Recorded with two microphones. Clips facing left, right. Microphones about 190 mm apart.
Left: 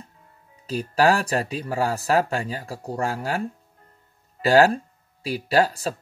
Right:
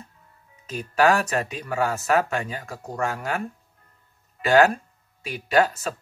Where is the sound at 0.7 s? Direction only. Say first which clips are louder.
Left 1 dB; 35° left (ahead or behind).